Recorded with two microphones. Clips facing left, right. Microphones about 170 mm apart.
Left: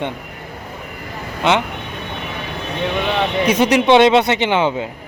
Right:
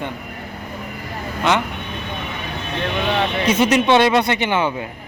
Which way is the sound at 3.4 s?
15° left (ahead or behind).